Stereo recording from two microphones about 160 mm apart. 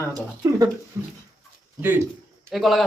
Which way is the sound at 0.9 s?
15° right (ahead or behind).